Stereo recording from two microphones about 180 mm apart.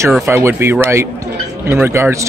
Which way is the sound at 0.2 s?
15° right (ahead or behind).